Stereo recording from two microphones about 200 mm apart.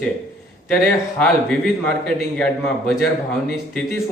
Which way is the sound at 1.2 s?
Centre (ahead or behind).